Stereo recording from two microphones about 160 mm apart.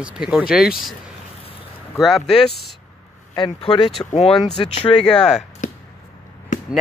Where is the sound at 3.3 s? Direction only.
30° left (ahead or behind).